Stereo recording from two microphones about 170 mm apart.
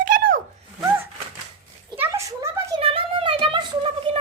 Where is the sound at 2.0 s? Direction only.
15° right (ahead or behind).